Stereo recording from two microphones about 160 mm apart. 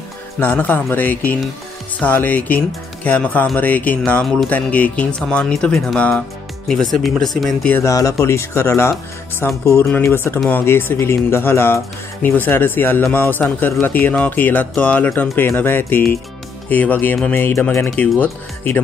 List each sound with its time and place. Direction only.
0.4 s speech: 10° left (ahead or behind)
7.3 s speech: 5° left (ahead or behind)
7.8 s speech: 20° left (ahead or behind)